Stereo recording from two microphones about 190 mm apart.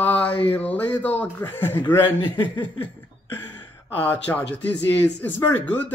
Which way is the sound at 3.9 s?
10° left (ahead or behind).